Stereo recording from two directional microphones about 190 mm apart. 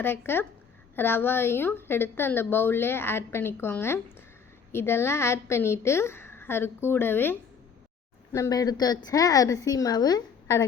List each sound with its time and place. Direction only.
0.0 s a woman's voice: 10° left (ahead or behind)